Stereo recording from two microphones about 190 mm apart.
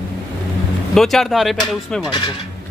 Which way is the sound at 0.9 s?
Centre (ahead or behind).